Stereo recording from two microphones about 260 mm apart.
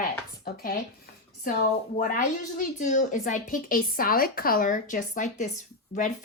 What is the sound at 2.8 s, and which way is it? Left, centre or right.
A woman's voice, left.